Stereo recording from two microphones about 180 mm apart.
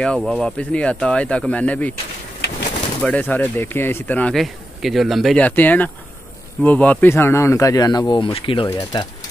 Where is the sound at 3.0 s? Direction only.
10° left (ahead or behind).